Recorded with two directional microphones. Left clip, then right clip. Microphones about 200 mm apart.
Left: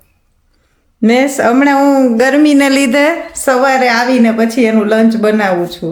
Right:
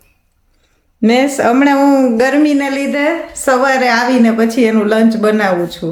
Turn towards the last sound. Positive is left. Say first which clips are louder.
# left 1 dB
turn(degrees=5)  # may be behind; listen again after turning